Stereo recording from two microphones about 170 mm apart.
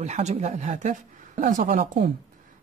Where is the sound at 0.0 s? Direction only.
40° right (ahead or behind).